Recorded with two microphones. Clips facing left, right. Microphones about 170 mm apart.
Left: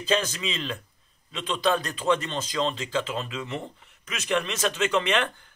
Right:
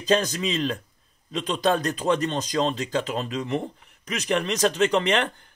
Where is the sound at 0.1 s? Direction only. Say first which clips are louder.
Right 4 dB; 40° right (ahead or behind).